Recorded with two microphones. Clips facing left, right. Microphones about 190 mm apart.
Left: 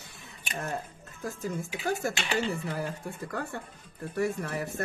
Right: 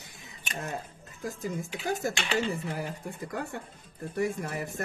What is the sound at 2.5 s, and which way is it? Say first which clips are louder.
A man's voice: left 1 dB; 15° right (ahead or behind).